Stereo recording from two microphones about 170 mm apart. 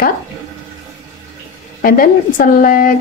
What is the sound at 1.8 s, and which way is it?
Speech, 55° left (ahead or behind).